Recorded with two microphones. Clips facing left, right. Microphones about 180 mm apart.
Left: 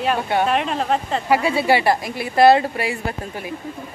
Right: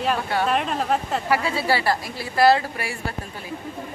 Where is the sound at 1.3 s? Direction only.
15° left (ahead or behind).